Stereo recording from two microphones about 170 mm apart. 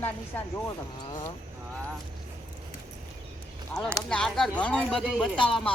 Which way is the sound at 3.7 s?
15° left (ahead or behind).